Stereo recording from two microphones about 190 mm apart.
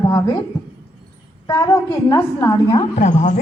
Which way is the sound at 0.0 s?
20° left (ahead or behind).